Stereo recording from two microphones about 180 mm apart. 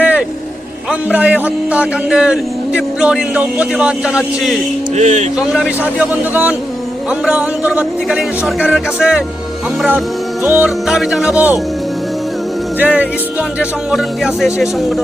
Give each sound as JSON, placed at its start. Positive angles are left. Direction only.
{"t": 0.0, "sound": "vehicle", "side_deg": -10}
{"t": 0.9, "sound": "a man's voice", "side_deg": -5}
{"t": 4.9, "sound": "speech", "side_deg": -40}
{"t": 5.5, "sound": "a man's voice", "side_deg": -5}
{"t": 10.4, "sound": "a man's voice", "side_deg": -10}
{"t": 12.8, "sound": "a man's voice", "side_deg": -10}